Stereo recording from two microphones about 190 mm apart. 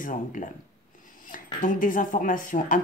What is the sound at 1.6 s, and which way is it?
Speech, 45° left (ahead or behind).